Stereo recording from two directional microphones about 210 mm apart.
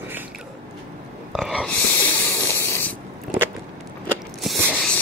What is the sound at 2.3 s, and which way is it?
Spray, 15° left (ahead or behind).